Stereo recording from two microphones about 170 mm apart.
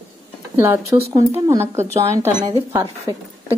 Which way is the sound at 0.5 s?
15° right (ahead or behind).